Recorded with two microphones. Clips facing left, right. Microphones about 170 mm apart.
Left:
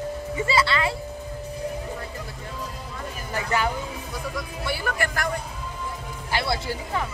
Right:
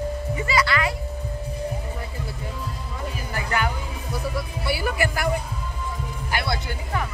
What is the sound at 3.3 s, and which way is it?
Music, 25° left (ahead or behind).